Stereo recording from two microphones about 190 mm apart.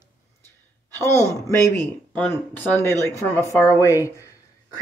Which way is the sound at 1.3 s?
15° left (ahead or behind).